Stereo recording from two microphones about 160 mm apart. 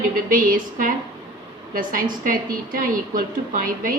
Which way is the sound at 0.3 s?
60° right (ahead or behind).